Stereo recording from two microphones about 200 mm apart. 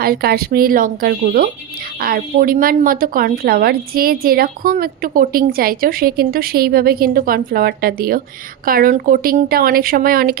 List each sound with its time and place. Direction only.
0.0 s a woman's voice: 50° right (ahead or behind)